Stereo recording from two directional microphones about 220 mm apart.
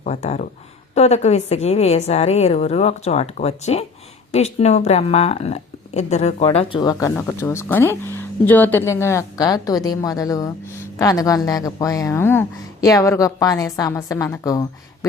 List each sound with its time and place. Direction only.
0.0 s a woman's voice: 30° left (ahead or behind)